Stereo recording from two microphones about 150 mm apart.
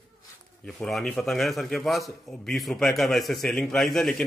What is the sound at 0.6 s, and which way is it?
A man's voice, centre (ahead or behind).